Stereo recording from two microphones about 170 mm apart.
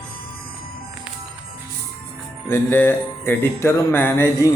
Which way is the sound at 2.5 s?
15° left (ahead or behind).